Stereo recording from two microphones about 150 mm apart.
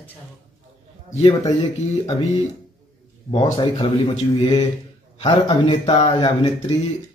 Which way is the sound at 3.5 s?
40° left (ahead or behind).